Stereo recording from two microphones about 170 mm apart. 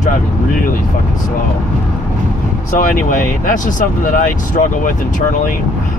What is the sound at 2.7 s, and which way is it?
Speech, 50° left (ahead or behind).